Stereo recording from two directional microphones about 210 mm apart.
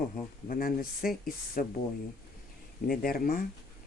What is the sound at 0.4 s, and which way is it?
Speech, 45° left (ahead or behind).